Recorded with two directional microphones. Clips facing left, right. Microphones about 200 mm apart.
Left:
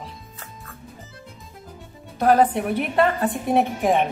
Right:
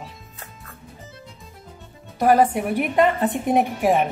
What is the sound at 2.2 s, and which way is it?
A woman's voice, 10° right (ahead or behind).